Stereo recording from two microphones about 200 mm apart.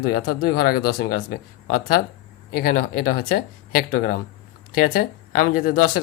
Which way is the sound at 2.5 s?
50° left (ahead or behind).